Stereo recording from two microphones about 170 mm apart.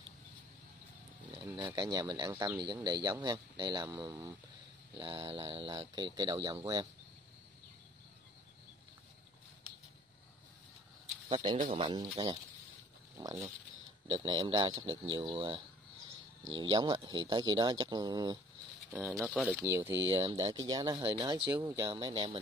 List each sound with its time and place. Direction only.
1.3 s speech: 25° right (ahead or behind)
11.2 s speech: 35° right (ahead or behind)
18.9 s speech: 10° right (ahead or behind)
19.1 s speech: centre (ahead or behind)
19.6 s speech: 15° right (ahead or behind)